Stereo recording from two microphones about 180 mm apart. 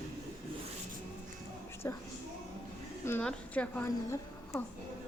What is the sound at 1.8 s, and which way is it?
Speech, 15° left (ahead or behind).